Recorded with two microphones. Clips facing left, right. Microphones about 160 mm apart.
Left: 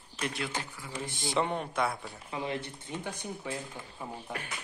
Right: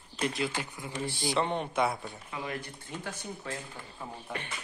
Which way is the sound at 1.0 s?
20° left (ahead or behind).